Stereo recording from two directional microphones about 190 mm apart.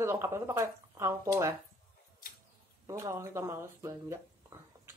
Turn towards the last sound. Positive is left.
turn(degrees=-15)  # may be behind; listen again after turning